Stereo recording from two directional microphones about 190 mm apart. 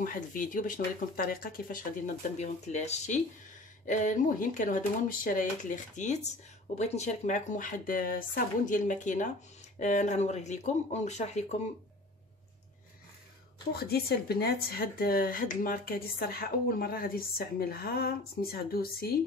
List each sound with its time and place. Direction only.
0.0 s speech: 45° left (ahead or behind)
2.3 s speech: 35° left (ahead or behind)
13.7 s speech: 55° left (ahead or behind)